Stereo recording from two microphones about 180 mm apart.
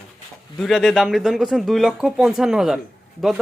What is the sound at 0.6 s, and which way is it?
Speech, centre (ahead or behind).